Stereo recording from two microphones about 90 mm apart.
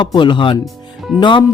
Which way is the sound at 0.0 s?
60° left (ahead or behind).